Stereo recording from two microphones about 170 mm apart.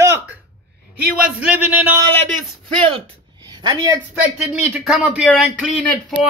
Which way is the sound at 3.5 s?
25° right (ahead or behind).